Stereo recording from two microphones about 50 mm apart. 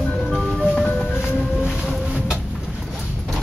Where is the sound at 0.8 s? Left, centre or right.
Left.